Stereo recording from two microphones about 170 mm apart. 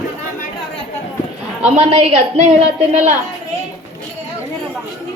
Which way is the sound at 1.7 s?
40° right (ahead or behind).